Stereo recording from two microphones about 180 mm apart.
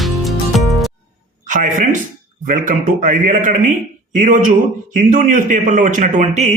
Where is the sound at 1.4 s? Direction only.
45° right (ahead or behind).